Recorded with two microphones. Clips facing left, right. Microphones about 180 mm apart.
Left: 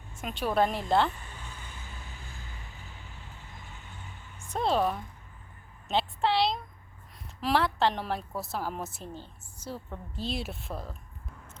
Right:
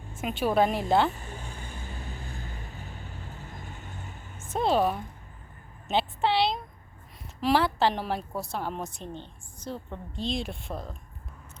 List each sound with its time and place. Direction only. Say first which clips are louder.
0.2 s a woman's voice: right 3 dB; 5° right (ahead or behind)
1.2 s vehicle: right 5 dB; 45° right (ahead or behind)
4.5 s a woman's voice: right 3 dB; centre (ahead or behind)
5.9 s a sound: right 2 dB; centre (ahead or behind)
7.4 s a woman's voice: right 2 dB; centre (ahead or behind)